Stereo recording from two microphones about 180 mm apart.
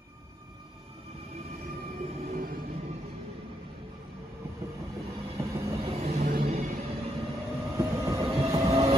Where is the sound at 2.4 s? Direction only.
50° right (ahead or behind).